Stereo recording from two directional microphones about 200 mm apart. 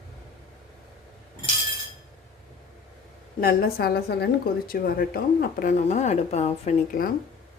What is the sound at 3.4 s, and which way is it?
A woman's voice, 50° left (ahead or behind).